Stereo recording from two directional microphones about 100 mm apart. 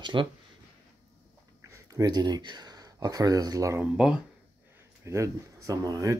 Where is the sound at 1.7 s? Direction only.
35° right (ahead or behind).